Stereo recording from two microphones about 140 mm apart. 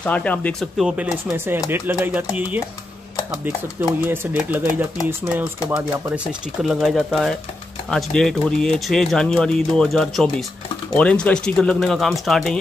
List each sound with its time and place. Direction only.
0.0 s speech: 10° left (ahead or behind)
1.3 s speech: 15° right (ahead or behind)
4.0 s speech: 15° right (ahead or behind); by 12.5 s centre (ahead or behind)